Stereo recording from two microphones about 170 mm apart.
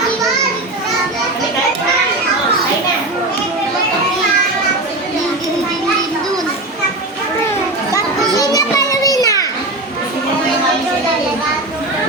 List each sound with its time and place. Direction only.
8.4 s children playing: 20° left (ahead or behind)